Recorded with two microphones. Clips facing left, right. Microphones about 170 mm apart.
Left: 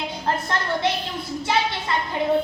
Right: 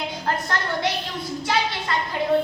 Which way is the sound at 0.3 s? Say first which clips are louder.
Left 2 dB; 25° left (ahead or behind).